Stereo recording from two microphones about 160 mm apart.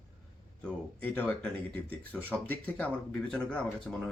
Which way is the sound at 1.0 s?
10° left (ahead or behind).